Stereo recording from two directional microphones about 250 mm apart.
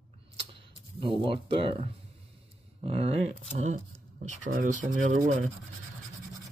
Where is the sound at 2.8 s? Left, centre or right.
Right.